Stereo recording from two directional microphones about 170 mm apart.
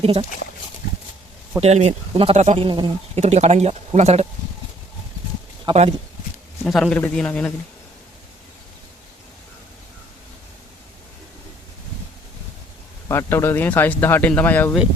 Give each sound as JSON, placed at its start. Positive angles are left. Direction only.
{"t": 0.0, "sound": "speech", "side_deg": -40}
{"t": 1.6, "sound": "speech", "side_deg": -40}
{"t": 2.6, "sound": "speech", "side_deg": -30}
{"t": 3.2, "sound": "speech", "side_deg": -40}
{"t": 5.6, "sound": "speech", "side_deg": -40}
{"t": 6.7, "sound": "a man's voice", "side_deg": 0}
{"t": 13.1, "sound": "speech", "side_deg": 15}